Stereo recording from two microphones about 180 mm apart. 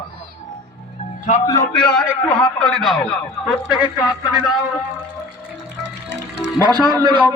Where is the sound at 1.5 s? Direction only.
20° left (ahead or behind).